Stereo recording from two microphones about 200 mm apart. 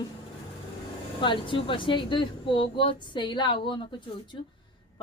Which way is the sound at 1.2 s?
25° left (ahead or behind).